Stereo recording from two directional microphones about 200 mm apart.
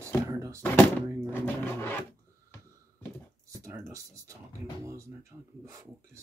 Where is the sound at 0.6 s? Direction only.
10° left (ahead or behind).